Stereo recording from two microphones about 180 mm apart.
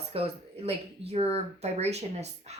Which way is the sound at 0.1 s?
35° right (ahead or behind).